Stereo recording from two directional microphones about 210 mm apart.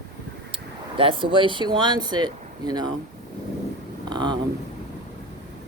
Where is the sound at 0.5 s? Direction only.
25° right (ahead or behind).